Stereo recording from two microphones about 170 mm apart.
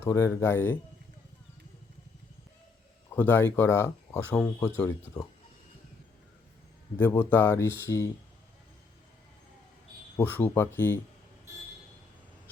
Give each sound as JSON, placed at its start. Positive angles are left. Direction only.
{"t": 0.0, "sound": "speech", "side_deg": 15}
{"t": 3.2, "sound": "speech", "side_deg": 10}
{"t": 6.9, "sound": "speech", "side_deg": 15}
{"t": 10.2, "sound": "speech", "side_deg": 10}